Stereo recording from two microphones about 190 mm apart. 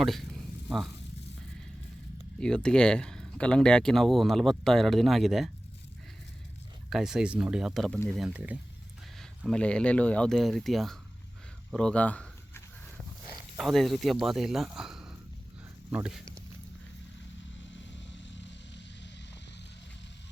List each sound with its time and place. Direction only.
0.0 s speech: centre (ahead or behind)
2.4 s speech: 5° left (ahead or behind)
6.9 s speech: 5° right (ahead or behind)
11.7 s a sound: 5° left (ahead or behind)
13.6 s speech: centre (ahead or behind)
17.7 s vehicle: 75° left (ahead or behind)